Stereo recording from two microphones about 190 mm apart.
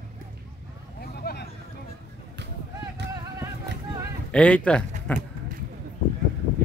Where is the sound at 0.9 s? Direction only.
55° left (ahead or behind).